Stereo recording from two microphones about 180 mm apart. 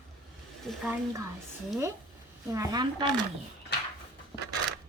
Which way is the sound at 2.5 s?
20° right (ahead or behind).